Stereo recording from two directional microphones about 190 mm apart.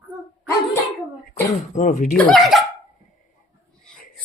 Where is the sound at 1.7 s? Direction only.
40° left (ahead or behind).